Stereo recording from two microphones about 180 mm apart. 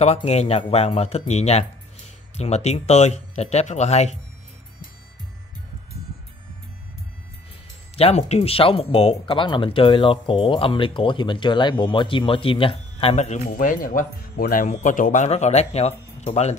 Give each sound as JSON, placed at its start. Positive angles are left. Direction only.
{"t": 0.0, "sound": "speech", "side_deg": 35}
{"t": 7.9, "sound": "speech", "side_deg": 35}
{"t": 13.5, "sound": "speech", "side_deg": 50}